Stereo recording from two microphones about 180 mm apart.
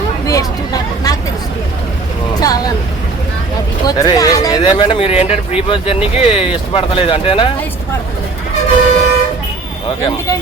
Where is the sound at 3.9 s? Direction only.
20° left (ahead or behind).